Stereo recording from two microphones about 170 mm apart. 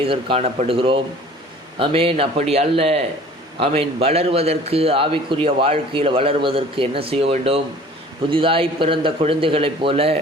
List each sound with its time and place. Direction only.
0.0 s a man's voice: 30° right (ahead or behind)